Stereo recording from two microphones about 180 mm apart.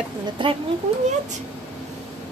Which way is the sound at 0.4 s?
25° right (ahead or behind).